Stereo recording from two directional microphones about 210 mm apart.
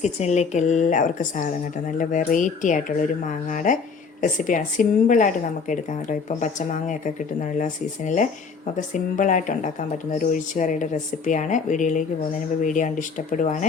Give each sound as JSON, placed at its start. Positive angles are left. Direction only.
{"t": 0.0, "sound": "speech", "side_deg": 35}